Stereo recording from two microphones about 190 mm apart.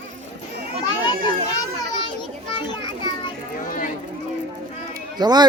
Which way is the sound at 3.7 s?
45° left (ahead or behind).